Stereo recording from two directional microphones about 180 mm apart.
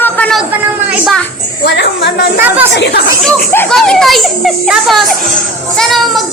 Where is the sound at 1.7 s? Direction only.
70° left (ahead or behind).